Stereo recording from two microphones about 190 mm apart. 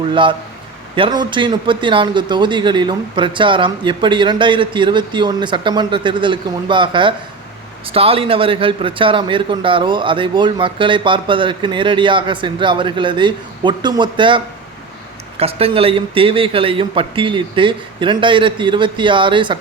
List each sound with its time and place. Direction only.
0.1 s a man's voice: 25° right (ahead or behind)